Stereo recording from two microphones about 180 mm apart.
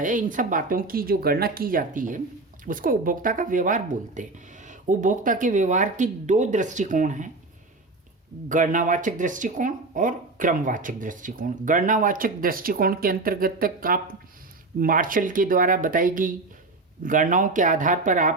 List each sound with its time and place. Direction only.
0.0 s speech: 45° right (ahead or behind)
8.4 s speech: 45° right (ahead or behind)